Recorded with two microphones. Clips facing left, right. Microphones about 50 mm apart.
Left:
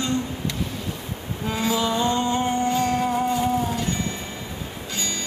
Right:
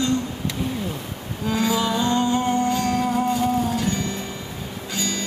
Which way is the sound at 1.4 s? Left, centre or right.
Centre.